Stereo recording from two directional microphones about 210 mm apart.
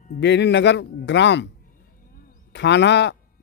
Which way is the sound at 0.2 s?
55° left (ahead or behind).